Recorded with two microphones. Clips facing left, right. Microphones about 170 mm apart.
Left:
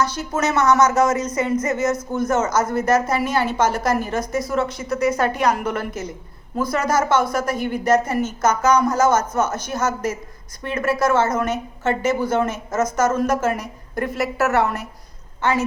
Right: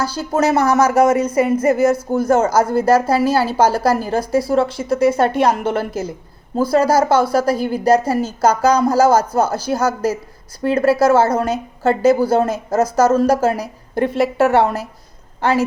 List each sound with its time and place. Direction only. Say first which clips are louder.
0.0 s speech: right 4 dB; 30° right (ahead or behind)